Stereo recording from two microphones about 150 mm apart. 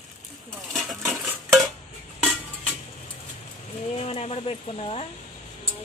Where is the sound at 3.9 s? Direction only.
40° left (ahead or behind).